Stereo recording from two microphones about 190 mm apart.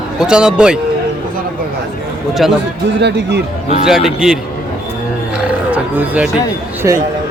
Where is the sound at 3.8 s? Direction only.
Centre (ahead or behind).